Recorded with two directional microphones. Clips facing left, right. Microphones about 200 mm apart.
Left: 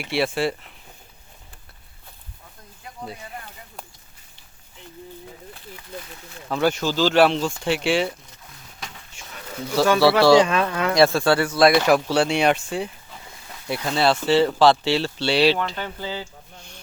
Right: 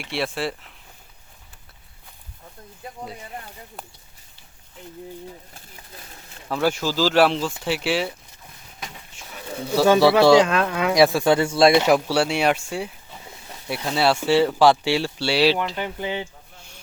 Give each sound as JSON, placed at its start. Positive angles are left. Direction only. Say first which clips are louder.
{"t": 0.0, "sound": "speech", "louder": "left 4 dB", "side_deg": 0}
{"t": 6.5, "sound": "speech", "louder": "left 1 dB", "side_deg": -5}
{"t": 8.8, "sound": "a sound", "louder": "right 1 dB", "side_deg": -5}
{"t": 9.8, "sound": "speech", "louder": "right 1 dB", "side_deg": -20}
{"t": 10.3, "sound": "speech", "louder": "even", "side_deg": 0}
{"t": 11.9, "sound": "speech", "louder": "left 1 dB", "side_deg": -5}
{"t": 16.6, "sound": "a sound", "louder": "left 3 dB", "side_deg": -10}